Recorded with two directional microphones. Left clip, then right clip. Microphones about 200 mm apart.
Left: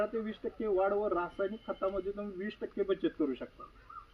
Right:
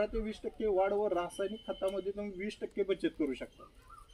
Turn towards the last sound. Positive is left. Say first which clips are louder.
# left 1 dB
turn(degrees=0)  # may be behind; listen again after turning